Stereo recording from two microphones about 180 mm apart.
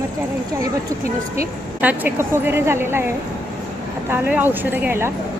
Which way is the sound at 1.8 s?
10° right (ahead or behind).